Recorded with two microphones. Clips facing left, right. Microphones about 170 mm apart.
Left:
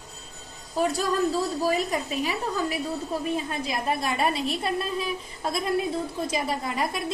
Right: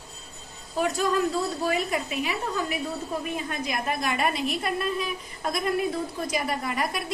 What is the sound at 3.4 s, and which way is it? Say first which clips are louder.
A woman's voice: left 1 dB; 30° left (ahead or behind).